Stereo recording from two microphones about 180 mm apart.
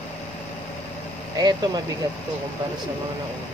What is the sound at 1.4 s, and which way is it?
Speech, 20° right (ahead or behind).